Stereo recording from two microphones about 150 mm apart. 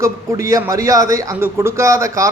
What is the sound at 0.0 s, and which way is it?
A man's voice, 20° right (ahead or behind).